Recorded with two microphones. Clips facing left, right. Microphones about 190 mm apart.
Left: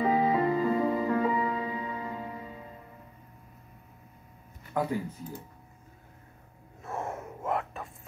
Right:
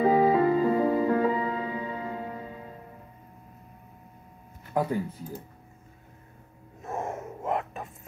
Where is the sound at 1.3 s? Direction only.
30° right (ahead or behind).